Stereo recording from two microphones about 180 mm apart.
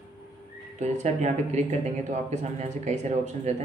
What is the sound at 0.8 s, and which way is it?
Speech, 40° right (ahead or behind).